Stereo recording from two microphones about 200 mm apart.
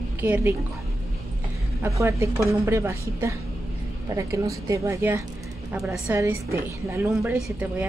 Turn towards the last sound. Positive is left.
turn(degrees=-5)  # may be behind; listen again after turning